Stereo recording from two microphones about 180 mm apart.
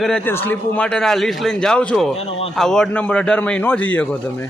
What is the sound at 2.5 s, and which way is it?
A man's voice, 5° left (ahead or behind).